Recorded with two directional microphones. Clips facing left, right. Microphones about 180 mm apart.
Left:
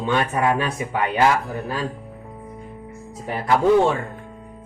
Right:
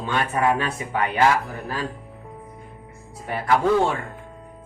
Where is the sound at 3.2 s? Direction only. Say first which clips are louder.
Left 2 dB; 15° left (ahead or behind).